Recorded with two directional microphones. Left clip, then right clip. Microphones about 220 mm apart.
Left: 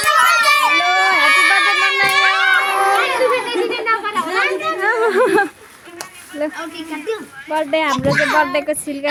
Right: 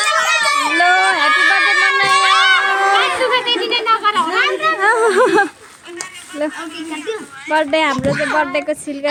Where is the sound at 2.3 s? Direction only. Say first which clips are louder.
Right 3 dB; 45° right (ahead or behind).